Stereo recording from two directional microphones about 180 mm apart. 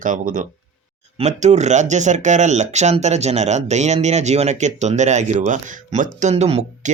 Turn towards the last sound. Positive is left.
turn(degrees=-40)  # may be behind; listen again after turning